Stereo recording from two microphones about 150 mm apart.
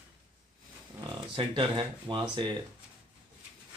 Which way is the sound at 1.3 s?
30° right (ahead or behind).